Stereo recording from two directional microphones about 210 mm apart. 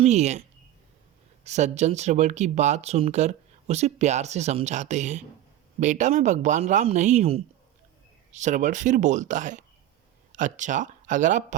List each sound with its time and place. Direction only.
0.0 s speech: 30° right (ahead or behind)
1.5 s speech: 35° right (ahead or behind)